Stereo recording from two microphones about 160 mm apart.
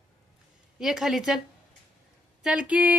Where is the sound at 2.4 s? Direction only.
5° right (ahead or behind).